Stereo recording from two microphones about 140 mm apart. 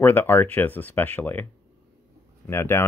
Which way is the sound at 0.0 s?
15° left (ahead or behind).